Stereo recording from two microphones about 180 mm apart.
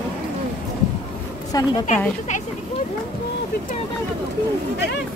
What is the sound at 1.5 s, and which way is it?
Speech, 25° left (ahead or behind).